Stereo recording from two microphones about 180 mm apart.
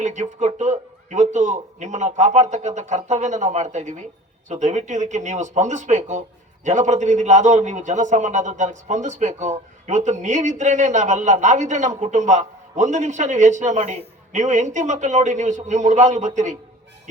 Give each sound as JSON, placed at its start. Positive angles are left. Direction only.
{"t": 0.0, "sound": "a man's voice", "side_deg": -40}